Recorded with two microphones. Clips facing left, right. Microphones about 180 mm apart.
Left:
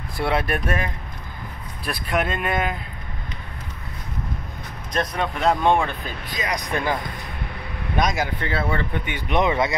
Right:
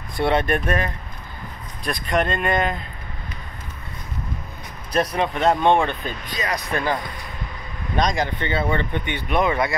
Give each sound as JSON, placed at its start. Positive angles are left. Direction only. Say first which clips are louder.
{"t": 0.2, "sound": "speech", "louder": "right 3 dB", "side_deg": 0}
{"t": 4.9, "sound": "speech", "louder": "right 3 dB", "side_deg": -5}
{"t": 9.3, "sound": "speech", "louder": "even", "side_deg": 20}